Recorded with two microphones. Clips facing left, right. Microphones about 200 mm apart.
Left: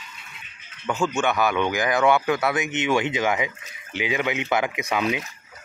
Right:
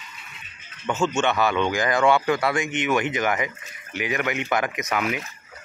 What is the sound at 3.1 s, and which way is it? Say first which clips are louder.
Speech: left 1 dB; 10° left (ahead or behind).